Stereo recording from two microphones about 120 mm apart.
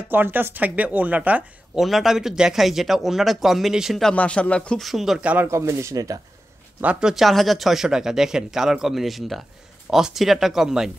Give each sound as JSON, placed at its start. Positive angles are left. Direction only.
{"t": 0.1, "sound": "speech", "side_deg": -15}
{"t": 1.8, "sound": "speech", "side_deg": 0}
{"t": 4.1, "sound": "speech", "side_deg": 10}
{"t": 5.5, "sound": "speech", "side_deg": -25}
{"t": 6.8, "sound": "speech", "side_deg": -10}